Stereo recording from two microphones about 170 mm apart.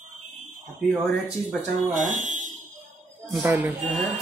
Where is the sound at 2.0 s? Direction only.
50° right (ahead or behind).